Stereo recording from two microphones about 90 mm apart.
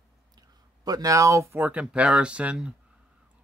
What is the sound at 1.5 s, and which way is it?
Speech, 15° right (ahead or behind).